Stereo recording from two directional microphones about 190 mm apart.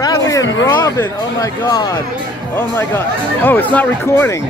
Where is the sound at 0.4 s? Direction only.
75° left (ahead or behind).